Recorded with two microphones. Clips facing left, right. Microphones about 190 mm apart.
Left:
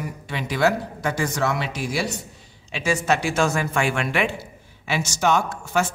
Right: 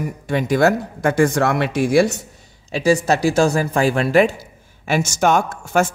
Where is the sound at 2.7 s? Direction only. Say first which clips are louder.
Right 6 dB; 35° right (ahead or behind).